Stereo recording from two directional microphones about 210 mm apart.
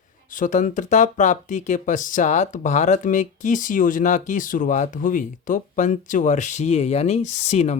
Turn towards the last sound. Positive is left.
turn(degrees=30)  # may be behind; listen again after turning